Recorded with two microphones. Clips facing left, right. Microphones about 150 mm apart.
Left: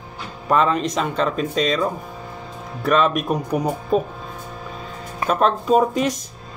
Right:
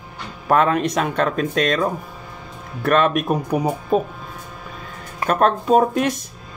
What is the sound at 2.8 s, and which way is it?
Speech, 55° right (ahead or behind).